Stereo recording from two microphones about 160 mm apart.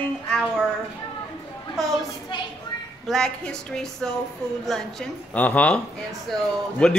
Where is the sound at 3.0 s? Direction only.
5° left (ahead or behind).